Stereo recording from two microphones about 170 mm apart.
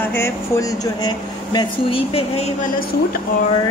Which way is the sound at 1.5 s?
35° left (ahead or behind).